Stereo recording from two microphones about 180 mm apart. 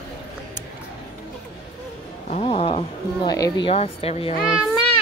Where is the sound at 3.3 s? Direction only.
25° left (ahead or behind).